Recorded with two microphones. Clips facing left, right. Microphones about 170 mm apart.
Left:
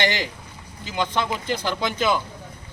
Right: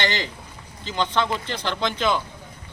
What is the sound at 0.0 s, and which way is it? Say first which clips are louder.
Speech: left 2 dB; 15° left (ahead or behind).